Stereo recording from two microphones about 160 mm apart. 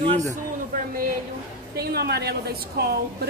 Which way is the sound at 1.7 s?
85° right.